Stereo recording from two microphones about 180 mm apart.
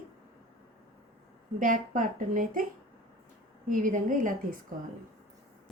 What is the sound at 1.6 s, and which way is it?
Speech, 45° right (ahead or behind).